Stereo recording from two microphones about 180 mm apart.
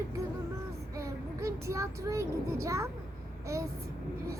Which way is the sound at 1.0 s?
15° right (ahead or behind).